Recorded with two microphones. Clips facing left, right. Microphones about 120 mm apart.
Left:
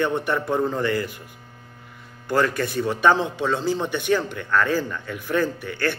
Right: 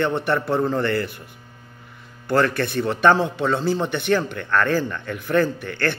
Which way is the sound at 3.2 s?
55° right (ahead or behind).